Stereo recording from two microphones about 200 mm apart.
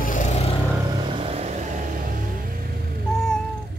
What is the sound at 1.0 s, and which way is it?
Vehicle, 30° right (ahead or behind).